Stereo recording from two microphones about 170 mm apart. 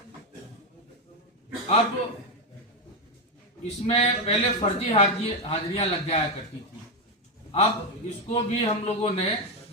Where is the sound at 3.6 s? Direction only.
40° left (ahead or behind).